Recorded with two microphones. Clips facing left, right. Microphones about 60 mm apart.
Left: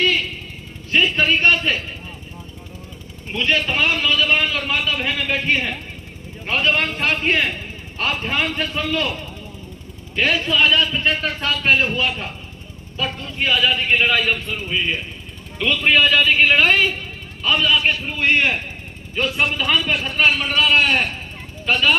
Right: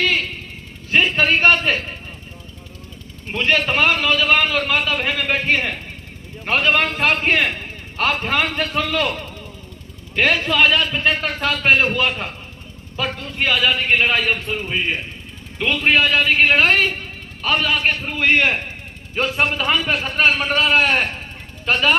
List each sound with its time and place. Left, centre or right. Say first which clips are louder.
0.0 s a sound: even; right
0.9 s a man's voice: right 1 dB; right
3.3 s a man's voice: right 2 dB; right
6.5 s a man's voice: right 2 dB; right
10.2 s a man's voice: right 1 dB; right
14.3 s a man's voice: right 1 dB; right
15.5 s a man's voice: even; right
15.8 s a man's voice: even; centre
16.2 s a man's voice: even; right
19.1 s a man's voice: right 1 dB; right